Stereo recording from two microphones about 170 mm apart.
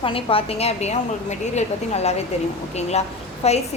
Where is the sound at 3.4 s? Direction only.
40° left (ahead or behind).